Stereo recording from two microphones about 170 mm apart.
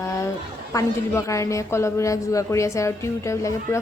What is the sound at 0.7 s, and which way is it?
Speech, 15° left (ahead or behind).